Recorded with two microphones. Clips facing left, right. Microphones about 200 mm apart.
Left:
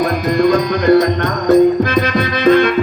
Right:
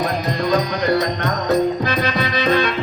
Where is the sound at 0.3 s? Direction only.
50° left (ahead or behind).